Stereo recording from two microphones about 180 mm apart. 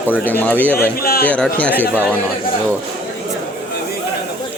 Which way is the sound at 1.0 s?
55° left (ahead or behind).